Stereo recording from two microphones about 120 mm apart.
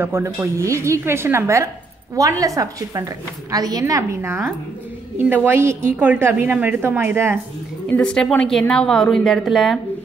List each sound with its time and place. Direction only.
0.0 s a woman's voice: 20° right (ahead or behind)
7.9 s a woman's voice: 5° left (ahead or behind)